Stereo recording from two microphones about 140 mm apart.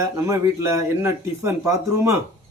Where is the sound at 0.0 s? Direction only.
20° right (ahead or behind).